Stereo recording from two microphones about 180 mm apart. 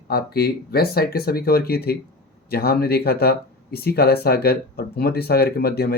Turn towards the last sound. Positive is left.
turn(degrees=60)  # may be behind; listen again after turning